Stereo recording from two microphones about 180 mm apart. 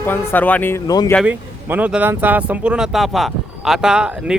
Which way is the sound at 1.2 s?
10° right (ahead or behind).